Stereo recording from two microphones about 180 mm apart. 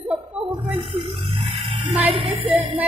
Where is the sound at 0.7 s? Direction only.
30° right (ahead or behind).